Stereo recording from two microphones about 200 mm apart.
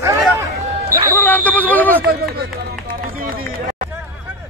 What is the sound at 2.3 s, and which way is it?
Speech, 55° right (ahead or behind).